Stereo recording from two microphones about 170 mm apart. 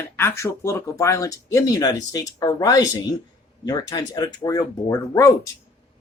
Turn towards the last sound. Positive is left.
turn(degrees=20)  # may be behind; listen again after turning